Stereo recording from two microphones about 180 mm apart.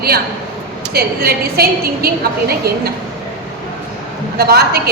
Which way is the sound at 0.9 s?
60° right (ahead or behind).